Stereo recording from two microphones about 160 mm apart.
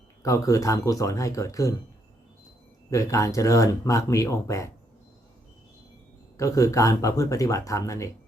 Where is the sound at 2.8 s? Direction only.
20° left (ahead or behind).